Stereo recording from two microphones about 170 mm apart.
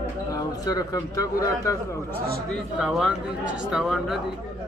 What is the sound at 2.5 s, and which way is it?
Speech, centre (ahead or behind).